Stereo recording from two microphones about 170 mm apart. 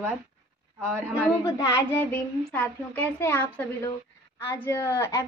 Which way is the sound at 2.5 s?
10° left (ahead or behind).